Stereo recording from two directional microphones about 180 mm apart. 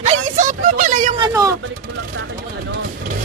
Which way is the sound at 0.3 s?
45° right (ahead or behind).